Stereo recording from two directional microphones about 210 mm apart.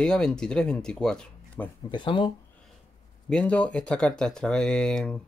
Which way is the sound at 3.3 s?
5° left (ahead or behind).